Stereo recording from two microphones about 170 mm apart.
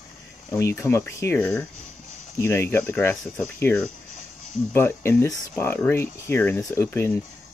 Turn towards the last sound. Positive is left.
turn(degrees=15)  # may be behind; listen again after turning